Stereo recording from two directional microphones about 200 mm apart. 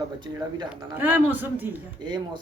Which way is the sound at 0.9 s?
10° right (ahead or behind).